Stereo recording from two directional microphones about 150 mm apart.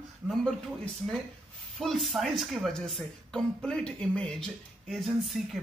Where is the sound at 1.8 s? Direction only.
Centre (ahead or behind).